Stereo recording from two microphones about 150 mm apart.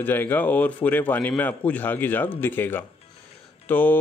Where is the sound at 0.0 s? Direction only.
15° left (ahead or behind).